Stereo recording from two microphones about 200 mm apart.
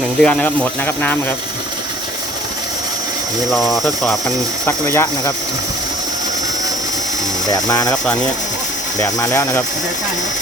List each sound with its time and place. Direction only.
0.2 s speech: 5° left (ahead or behind)
3.5 s speech: centre (ahead or behind)
4.6 s speech: 15° left (ahead or behind)
7.5 s speech: 15° left (ahead or behind)
9.0 s speech: 15° left (ahead or behind)